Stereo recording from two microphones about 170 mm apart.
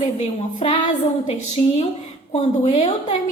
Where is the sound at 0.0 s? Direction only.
35° left (ahead or behind).